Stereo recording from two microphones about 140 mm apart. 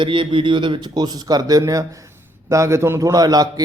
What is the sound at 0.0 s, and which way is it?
Speech, 35° right (ahead or behind).